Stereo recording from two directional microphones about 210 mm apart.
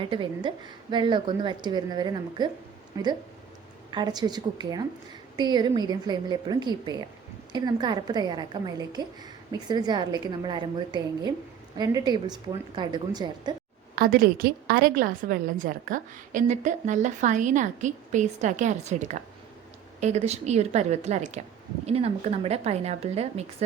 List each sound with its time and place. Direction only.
0.0 s a woman's voice: 25° right (ahead or behind)
3.9 s a woman's voice: 20° right (ahead or behind)
13.9 s a woman's voice: 45° right (ahead or behind)